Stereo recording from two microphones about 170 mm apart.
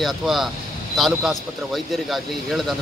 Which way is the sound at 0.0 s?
Centre (ahead or behind).